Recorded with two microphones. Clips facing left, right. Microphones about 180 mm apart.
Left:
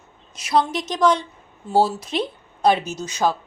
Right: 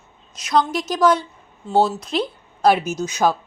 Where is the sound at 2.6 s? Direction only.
10° right (ahead or behind).